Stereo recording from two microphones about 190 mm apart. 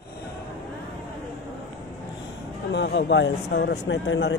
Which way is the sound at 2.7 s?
65° left (ahead or behind).